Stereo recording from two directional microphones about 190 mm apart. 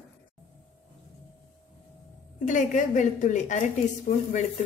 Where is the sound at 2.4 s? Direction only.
40° left (ahead or behind).